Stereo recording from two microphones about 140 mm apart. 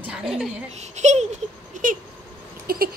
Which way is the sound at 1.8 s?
70° right (ahead or behind).